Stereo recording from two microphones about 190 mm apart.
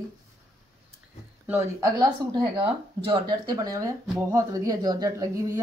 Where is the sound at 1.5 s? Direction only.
15° right (ahead or behind).